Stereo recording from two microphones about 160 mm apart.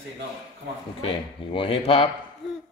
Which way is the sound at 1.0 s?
35° left (ahead or behind).